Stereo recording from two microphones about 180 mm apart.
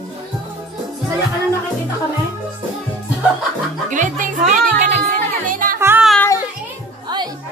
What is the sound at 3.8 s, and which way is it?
Music, 45° right (ahead or behind).